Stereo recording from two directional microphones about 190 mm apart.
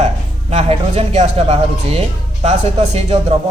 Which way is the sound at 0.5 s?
35° right (ahead or behind).